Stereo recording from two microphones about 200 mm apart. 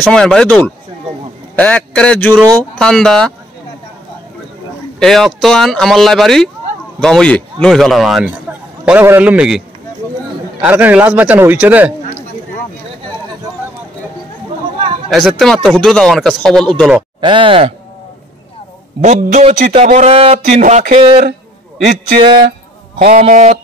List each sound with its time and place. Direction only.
0.0 s a man's voice: 5° left (ahead or behind)
4.9 s a man's voice: centre (ahead or behind)
10.6 s a man's voice: 10° right (ahead or behind)
15.0 s speech: centre (ahead or behind)
17.2 s speech: 25° right (ahead or behind)
19.4 s speech: 30° right (ahead or behind)
22.9 s speech: 45° right (ahead or behind)